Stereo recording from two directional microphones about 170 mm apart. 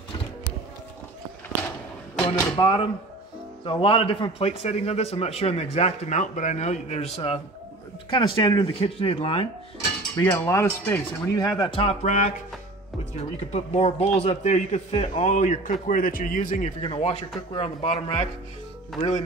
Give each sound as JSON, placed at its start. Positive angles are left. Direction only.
{"t": 2.5, "sound": "a man's voice", "side_deg": 25}
{"t": 8.1, "sound": "a man's voice", "side_deg": 25}
{"t": 10.2, "sound": "a man's voice", "side_deg": 15}
{"t": 16.8, "sound": "a man's voice", "side_deg": 35}